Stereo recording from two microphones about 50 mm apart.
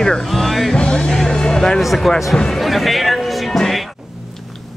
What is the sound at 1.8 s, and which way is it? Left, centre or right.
Speech, centre.